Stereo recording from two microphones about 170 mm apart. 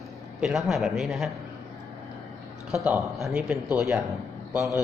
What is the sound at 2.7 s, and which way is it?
A woman's voice, 5° right (ahead or behind).